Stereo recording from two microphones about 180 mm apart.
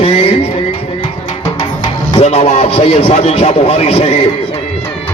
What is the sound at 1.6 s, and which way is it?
Music, 25° left (ahead or behind).